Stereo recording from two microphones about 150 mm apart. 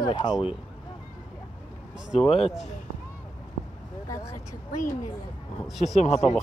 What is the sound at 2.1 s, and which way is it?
Speech, centre (ahead or behind).